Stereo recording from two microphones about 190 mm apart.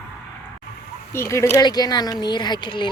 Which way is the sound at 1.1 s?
15° left (ahead or behind).